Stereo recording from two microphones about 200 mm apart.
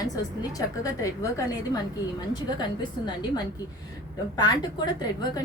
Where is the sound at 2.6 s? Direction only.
20° left (ahead or behind).